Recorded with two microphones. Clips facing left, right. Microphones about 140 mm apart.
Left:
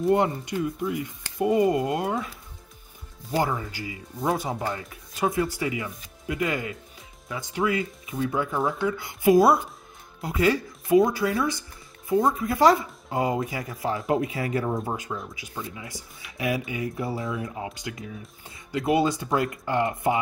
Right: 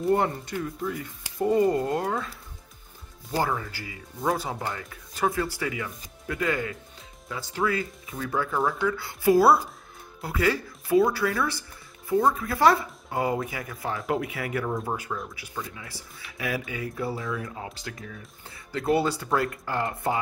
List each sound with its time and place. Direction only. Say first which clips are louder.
0.1 s speech: left 1 dB; 15° left (ahead or behind)